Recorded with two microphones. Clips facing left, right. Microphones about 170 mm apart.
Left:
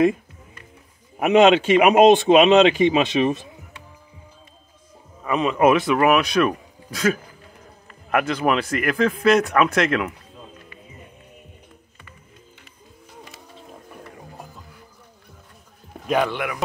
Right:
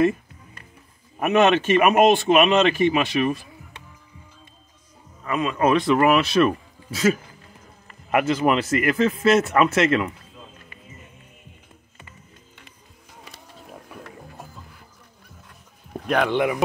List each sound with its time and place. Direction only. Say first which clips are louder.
1.2 s speech: left 3 dB; 15° left (ahead or behind)
5.2 s speech: left 4 dB; 20° left (ahead or behind); by 10.1 s centre (ahead or behind)
16.3 s speech: right 6 dB; 25° right (ahead or behind)